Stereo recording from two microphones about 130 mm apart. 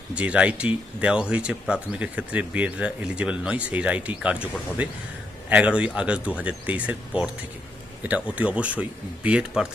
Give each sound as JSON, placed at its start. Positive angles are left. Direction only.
{"t": 0.1, "sound": "speech", "side_deg": -10}